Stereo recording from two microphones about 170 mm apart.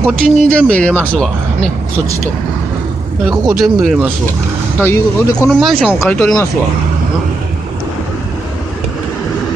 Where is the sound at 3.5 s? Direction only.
5° right (ahead or behind).